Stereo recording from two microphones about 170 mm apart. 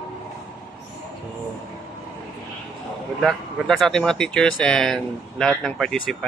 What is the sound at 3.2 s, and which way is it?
Speech, centre (ahead or behind).